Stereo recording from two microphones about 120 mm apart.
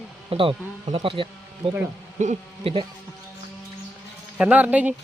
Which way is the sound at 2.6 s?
50° right (ahead or behind).